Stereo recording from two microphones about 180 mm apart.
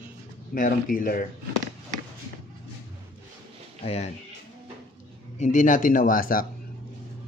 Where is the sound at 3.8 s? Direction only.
35° left (ahead or behind).